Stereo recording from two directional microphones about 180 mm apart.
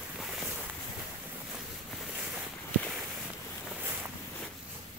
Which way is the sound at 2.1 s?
5° right (ahead or behind).